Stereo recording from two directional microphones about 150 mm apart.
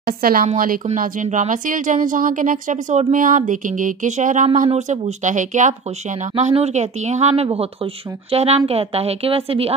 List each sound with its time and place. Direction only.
0.0 s speech: 75° right (ahead or behind)
0.8 s speech: 55° right (ahead or behind)
6.3 s speech: 45° right (ahead or behind)